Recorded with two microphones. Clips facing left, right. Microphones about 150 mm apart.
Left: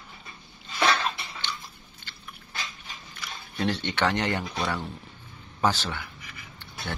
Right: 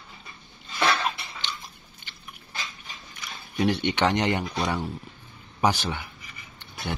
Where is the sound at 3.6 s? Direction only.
15° right (ahead or behind).